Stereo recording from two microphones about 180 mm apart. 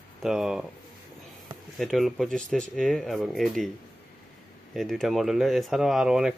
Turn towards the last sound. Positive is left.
turn(degrees=0)  # may be behind; listen again after turning